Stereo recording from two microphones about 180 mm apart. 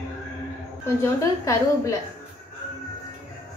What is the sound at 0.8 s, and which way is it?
A woman's voice, 15° left (ahead or behind).